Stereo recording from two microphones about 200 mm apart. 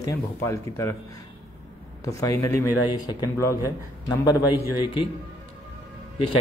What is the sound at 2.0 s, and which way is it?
Speech, 15° left (ahead or behind).